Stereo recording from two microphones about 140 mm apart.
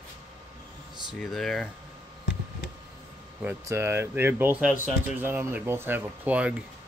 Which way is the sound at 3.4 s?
20° right (ahead or behind).